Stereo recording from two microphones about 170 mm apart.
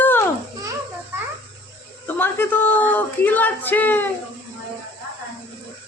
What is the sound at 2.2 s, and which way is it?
Speech, 10° left (ahead or behind).